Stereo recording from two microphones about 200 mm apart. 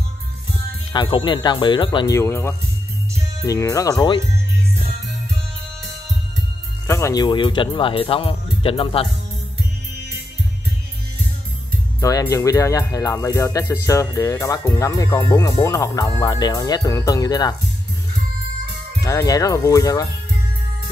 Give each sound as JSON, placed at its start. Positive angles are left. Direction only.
{"t": 0.9, "sound": "speech", "side_deg": 25}
{"t": 6.9, "sound": "speech", "side_deg": 15}
{"t": 12.0, "sound": "speech", "side_deg": 15}
{"t": 19.0, "sound": "speech", "side_deg": 15}